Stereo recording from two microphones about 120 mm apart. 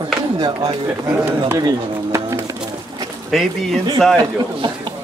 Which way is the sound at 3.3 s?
Centre (ahead or behind).